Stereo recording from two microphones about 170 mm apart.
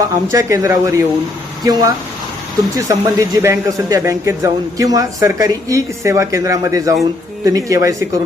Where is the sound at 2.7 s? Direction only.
20° right (ahead or behind).